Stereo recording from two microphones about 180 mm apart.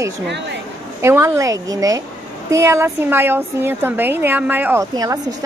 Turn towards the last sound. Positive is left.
turn(degrees=-20)  # may be behind; listen again after turning